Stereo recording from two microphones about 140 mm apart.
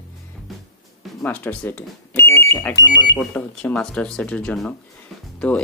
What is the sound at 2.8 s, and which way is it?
Speech, 30° left (ahead or behind).